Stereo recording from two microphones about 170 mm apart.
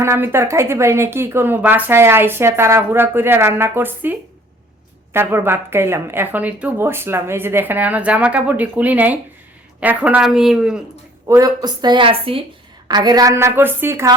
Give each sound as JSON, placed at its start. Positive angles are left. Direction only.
{"t": 0.0, "sound": "a woman's voice", "side_deg": -15}
{"t": 11.3, "sound": "a woman's voice", "side_deg": -20}